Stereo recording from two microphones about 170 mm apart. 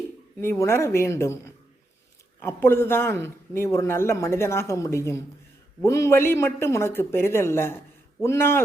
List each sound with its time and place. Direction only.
0.4 s a man's voice: 15° left (ahead or behind)